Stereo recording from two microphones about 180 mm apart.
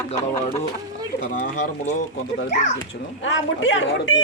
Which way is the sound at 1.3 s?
45° left (ahead or behind).